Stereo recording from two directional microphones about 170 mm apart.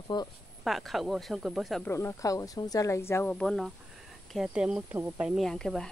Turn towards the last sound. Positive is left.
turn(degrees=5)  # may be behind; listen again after turning